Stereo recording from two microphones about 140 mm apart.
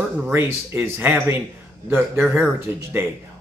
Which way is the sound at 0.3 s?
15° right (ahead or behind).